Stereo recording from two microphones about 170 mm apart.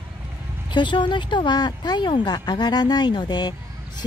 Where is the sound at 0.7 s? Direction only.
25° left (ahead or behind).